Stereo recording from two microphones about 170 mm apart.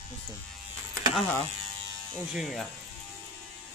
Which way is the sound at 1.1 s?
10° left (ahead or behind).